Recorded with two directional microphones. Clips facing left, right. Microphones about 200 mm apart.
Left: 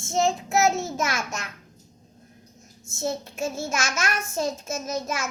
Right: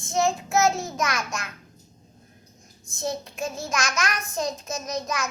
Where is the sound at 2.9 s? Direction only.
5° left (ahead or behind).